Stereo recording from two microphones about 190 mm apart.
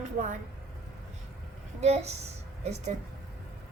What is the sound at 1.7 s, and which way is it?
A woman's voice, 35° right (ahead or behind).